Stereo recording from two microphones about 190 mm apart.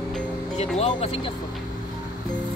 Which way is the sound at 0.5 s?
35° left (ahead or behind).